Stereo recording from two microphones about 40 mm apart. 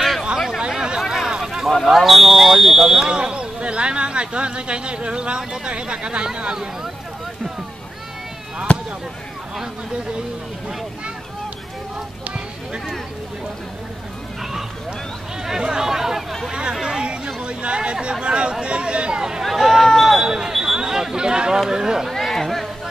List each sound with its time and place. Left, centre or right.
0.6 s a sound: centre
1.0 s a sound: centre
2.0 s fire alarm: centre
3.1 s speech: right
6.5 s speech: centre
8.7 s speech: left
15.4 s speech: centre
16.4 s speech: right
19.4 s speech: centre
20.2 s speech: centre
22.2 s speech: centre